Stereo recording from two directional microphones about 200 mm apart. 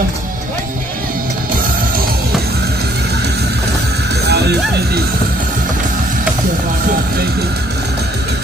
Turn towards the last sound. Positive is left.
turn(degrees=-50)  # may be behind; listen again after turning